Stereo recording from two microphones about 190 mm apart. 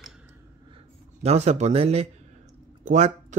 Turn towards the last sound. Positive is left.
turn(degrees=-40)  # may be behind; listen again after turning